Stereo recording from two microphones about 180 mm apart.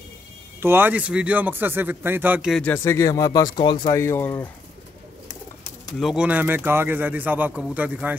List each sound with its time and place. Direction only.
0.6 s speech: 10° right (ahead or behind)
2.5 s speech: 10° left (ahead or behind)
5.9 s speech: centre (ahead or behind)